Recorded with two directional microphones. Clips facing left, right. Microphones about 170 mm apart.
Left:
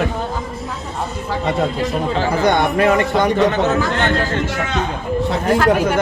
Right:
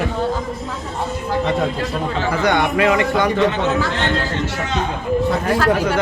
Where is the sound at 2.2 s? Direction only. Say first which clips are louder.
Left 1 dB; 45° left (ahead or behind).